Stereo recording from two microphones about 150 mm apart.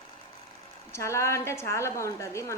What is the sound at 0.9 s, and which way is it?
A woman's voice, 20° left (ahead or behind).